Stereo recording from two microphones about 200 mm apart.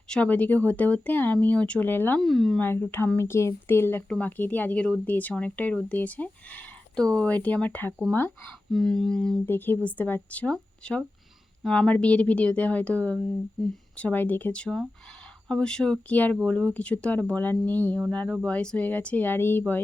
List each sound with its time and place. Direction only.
0.1 s speech: 5° left (ahead or behind)